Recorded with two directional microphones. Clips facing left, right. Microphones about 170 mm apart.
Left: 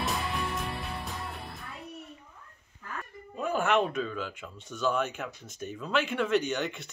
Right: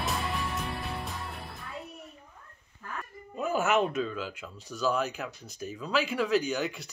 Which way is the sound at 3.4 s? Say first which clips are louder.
Even; 5° right (ahead or behind).